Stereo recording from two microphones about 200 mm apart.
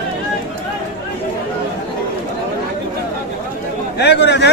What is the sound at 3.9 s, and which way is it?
Speech, 55° left (ahead or behind).